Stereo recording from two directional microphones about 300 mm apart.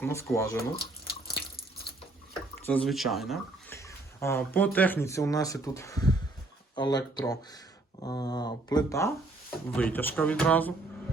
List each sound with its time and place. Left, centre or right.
0.0 s speech: centre
0.8 s drip: left
2.6 s speech: centre